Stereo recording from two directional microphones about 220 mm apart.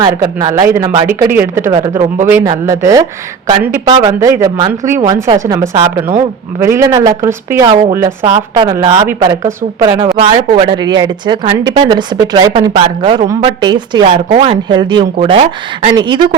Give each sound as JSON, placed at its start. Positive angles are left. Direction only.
{"t": 0.0, "sound": "speech", "side_deg": -20}